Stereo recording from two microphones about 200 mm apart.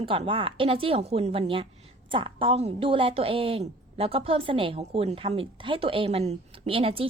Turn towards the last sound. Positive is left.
turn(degrees=-30)  # may be behind; listen again after turning